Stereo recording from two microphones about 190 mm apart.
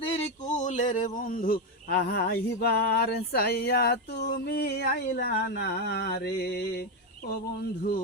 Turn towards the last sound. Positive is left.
turn(degrees=60)  # may be behind; listen again after turning